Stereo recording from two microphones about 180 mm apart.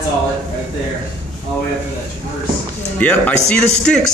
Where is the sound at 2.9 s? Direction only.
10° left (ahead or behind).